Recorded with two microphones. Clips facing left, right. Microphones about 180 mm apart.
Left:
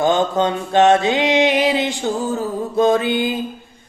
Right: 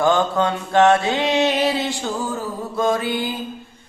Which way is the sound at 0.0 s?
20° left (ahead or behind).